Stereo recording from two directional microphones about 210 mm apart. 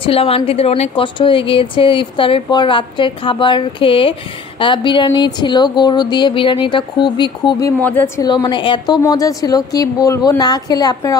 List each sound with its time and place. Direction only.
0.0 s a woman's voice: 25° left (ahead or behind)
7.8 s a woman's voice: 10° left (ahead or behind)
8.3 s a woman's voice: 20° left (ahead or behind)